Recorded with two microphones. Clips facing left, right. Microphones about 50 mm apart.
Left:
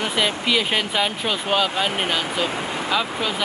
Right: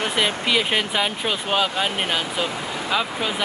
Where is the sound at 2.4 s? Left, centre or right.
Left.